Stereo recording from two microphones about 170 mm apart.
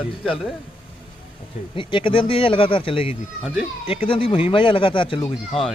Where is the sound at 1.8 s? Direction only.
30° left (ahead or behind).